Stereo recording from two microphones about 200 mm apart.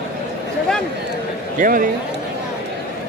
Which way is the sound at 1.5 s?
45° right (ahead or behind).